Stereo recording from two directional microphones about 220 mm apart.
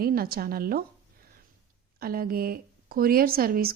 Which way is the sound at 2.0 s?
40° right (ahead or behind).